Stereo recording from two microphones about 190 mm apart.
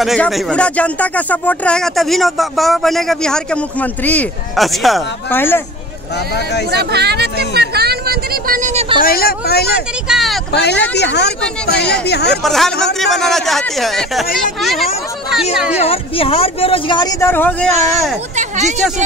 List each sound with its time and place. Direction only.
0.0 s speech: centre (ahead or behind)
5.3 s speech: 10° left (ahead or behind)
6.7 s speech: 60° right (ahead or behind); by 9.0 s 30° right (ahead or behind)
9.0 s speech: 55° left (ahead or behind)
10.0 s speech: centre (ahead or behind)
10.5 s speech: 60° left (ahead or behind)
12.4 s speech: centre (ahead or behind)
15.8 s speech: 30° left (ahead or behind); by 17.6 s 10° left (ahead or behind)
18.3 s speech: 40° right (ahead or behind)